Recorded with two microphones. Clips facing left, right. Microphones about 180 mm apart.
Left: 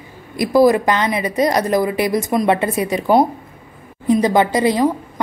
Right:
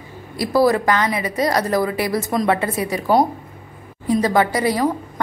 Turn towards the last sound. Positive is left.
turn(degrees=20)  # may be behind; listen again after turning